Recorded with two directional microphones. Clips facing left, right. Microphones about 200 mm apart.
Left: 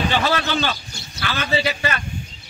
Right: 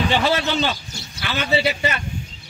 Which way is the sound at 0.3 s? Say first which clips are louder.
Right 1 dB; 20° right (ahead or behind).